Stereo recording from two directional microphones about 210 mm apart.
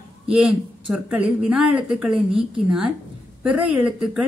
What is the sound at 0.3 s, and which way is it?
Speech, 5° right (ahead or behind).